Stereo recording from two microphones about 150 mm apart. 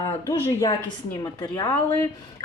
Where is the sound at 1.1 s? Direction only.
25° left (ahead or behind).